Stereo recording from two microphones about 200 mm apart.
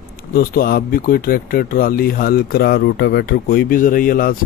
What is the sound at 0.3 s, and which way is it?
Speech, 50° left (ahead or behind).